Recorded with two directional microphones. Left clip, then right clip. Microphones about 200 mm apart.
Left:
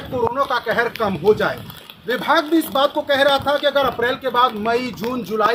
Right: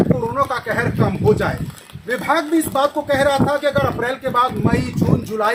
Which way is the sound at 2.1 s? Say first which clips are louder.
Left 1 dB; 15° right (ahead or behind).